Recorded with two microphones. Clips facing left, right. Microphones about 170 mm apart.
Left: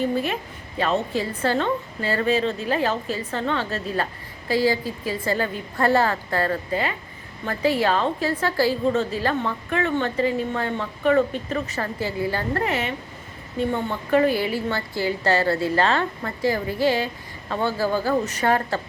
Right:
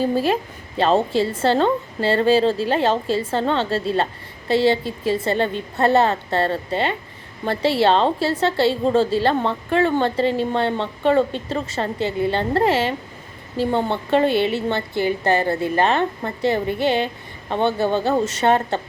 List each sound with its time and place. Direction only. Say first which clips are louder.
0.0 s a woman's voice: right 4 dB; 35° right (ahead or behind)